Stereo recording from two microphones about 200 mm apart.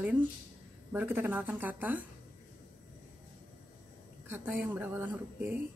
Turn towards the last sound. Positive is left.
turn(degrees=-10)  # may be behind; listen again after turning